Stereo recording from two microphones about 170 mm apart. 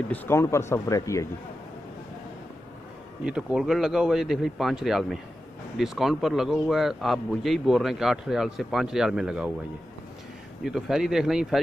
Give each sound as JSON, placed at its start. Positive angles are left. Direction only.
{"t": 0.1, "sound": "speech", "side_deg": 15}
{"t": 3.3, "sound": "speech", "side_deg": -5}
{"t": 10.6, "sound": "speech", "side_deg": -5}